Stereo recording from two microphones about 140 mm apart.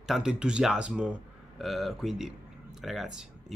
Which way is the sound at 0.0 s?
5° right (ahead or behind).